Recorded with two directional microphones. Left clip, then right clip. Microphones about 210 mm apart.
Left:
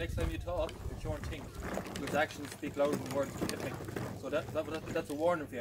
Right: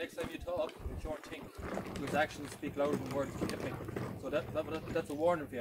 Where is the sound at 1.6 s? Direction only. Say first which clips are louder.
Left 1 dB; 50° left (ahead or behind).